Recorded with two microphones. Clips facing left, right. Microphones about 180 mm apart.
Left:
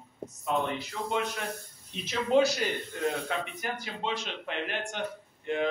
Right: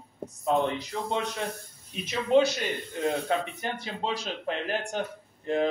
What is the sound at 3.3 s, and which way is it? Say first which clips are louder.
A man's voice: right 4 dB; 25° right (ahead or behind).